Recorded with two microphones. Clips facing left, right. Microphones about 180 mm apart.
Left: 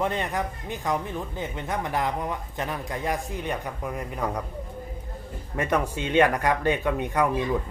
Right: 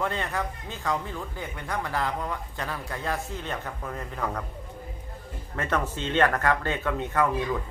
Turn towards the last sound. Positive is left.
turn(degrees=15)  # may be behind; listen again after turning